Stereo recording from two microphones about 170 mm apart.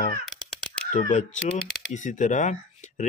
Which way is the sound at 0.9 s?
45° left (ahead or behind).